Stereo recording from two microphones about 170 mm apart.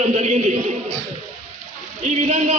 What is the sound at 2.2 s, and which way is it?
Speech, 40° right (ahead or behind).